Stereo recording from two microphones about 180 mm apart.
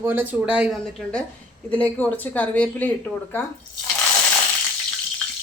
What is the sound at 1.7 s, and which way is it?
Speech, 10° left (ahead or behind).